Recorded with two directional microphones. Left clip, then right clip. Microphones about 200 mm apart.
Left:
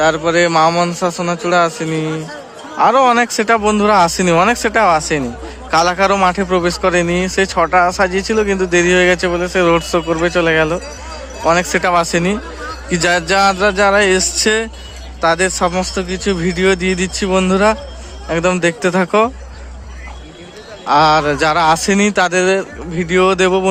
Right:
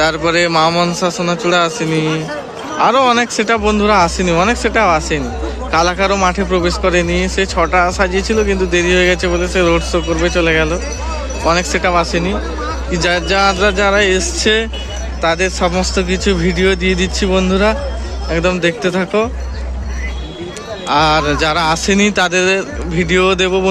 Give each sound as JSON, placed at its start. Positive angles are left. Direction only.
{"t": 0.0, "sound": "a man's voice", "side_deg": 15}
{"t": 11.8, "sound": "a man's voice", "side_deg": 35}
{"t": 20.8, "sound": "speech", "side_deg": 30}